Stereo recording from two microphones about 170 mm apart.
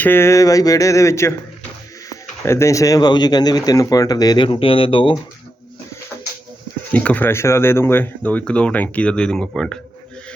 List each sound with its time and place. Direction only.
0.0 s speech: 15° left (ahead or behind); by 5.1 s 30° left (ahead or behind)
6.9 s speech: 10° left (ahead or behind)